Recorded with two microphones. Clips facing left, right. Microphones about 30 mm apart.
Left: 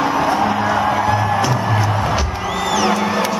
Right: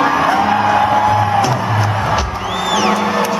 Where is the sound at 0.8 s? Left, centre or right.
Centre.